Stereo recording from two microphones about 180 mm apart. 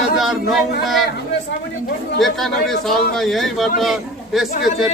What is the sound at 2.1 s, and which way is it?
A man's voice, centre (ahead or behind).